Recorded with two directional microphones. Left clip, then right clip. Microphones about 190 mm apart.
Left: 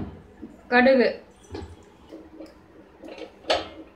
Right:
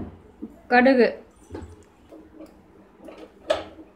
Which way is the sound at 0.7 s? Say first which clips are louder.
Right 1 dB; 55° right (ahead or behind).